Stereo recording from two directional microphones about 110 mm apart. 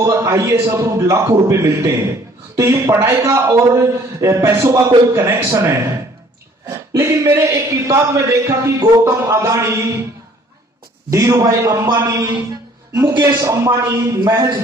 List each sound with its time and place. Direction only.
0.0 s a man's voice: 25° right (ahead or behind)
6.9 s a man's voice: 25° right (ahead or behind)
11.1 s a man's voice: 25° right (ahead or behind)